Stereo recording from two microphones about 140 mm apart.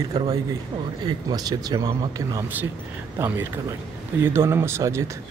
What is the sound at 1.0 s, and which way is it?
Speech, 25° right (ahead or behind).